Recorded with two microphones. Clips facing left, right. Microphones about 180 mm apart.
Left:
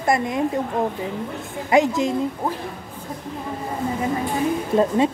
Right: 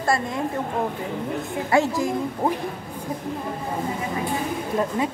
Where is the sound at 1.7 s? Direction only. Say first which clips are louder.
Left 3 dB; 20° left (ahead or behind).